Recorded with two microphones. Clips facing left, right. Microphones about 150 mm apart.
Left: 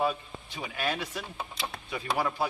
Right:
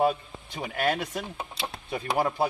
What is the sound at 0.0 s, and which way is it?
Speech, 45° right (ahead or behind).